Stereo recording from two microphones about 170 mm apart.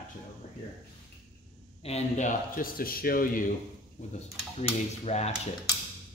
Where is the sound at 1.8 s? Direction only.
40° left (ahead or behind); by 3.4 s 60° left (ahead or behind).